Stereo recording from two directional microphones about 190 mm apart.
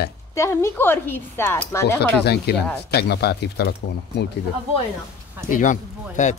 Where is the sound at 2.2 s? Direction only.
60° left (ahead or behind).